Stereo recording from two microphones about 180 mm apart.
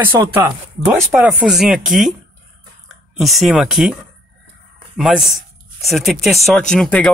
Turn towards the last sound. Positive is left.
turn(degrees=5)  # may be behind; listen again after turning